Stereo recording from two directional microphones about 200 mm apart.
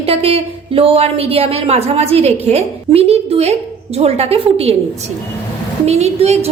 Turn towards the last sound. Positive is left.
turn(degrees=-35)  # may be behind; listen again after turning